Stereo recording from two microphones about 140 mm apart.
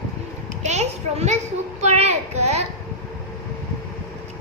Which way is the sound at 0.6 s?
50° right (ahead or behind).